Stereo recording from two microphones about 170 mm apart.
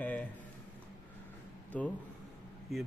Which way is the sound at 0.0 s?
10° left (ahead or behind).